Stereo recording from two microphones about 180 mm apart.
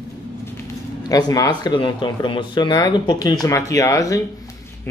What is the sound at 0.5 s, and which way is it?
Speech, 20° left (ahead or behind).